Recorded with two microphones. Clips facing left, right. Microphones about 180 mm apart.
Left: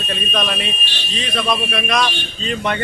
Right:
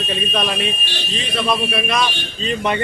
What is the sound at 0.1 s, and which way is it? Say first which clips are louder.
A man's voice: even; 5° right (ahead or behind).